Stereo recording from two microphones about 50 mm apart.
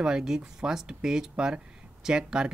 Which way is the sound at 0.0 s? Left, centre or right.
Centre.